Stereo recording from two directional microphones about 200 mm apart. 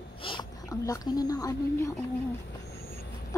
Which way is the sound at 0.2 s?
25° left (ahead or behind).